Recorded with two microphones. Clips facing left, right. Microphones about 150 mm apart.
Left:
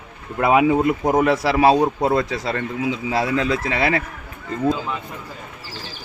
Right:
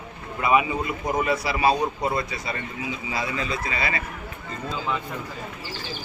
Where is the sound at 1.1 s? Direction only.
90° left.